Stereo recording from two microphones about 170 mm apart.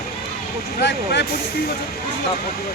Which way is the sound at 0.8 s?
90° left.